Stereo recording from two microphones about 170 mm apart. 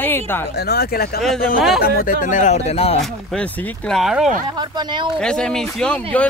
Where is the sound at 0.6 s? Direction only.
65° left (ahead or behind); by 3.0 s 40° left (ahead or behind).